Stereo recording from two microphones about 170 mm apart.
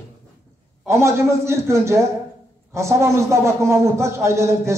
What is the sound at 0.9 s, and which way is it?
A man's voice, 15° right (ahead or behind).